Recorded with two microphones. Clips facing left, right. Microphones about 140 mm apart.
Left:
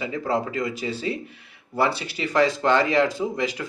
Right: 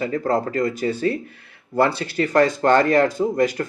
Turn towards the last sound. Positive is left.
turn(degrees=-50)  # may be behind; listen again after turning